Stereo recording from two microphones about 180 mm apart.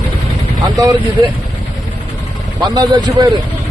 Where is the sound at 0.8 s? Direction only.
25° right (ahead or behind).